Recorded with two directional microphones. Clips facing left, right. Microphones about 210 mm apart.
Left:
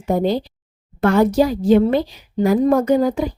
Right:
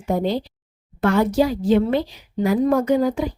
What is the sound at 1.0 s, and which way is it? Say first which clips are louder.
A woman's voice: left 3 dB; 40° left (ahead or behind).